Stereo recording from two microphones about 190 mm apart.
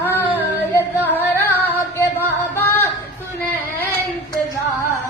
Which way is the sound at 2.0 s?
10° left (ahead or behind).